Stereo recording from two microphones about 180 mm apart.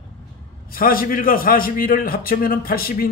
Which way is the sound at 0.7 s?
55° left (ahead or behind).